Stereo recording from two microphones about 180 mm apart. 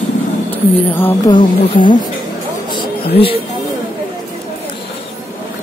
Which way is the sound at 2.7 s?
30° left (ahead or behind).